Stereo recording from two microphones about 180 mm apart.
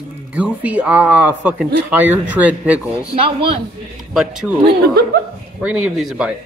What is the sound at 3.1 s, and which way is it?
Speech, 30° right (ahead or behind).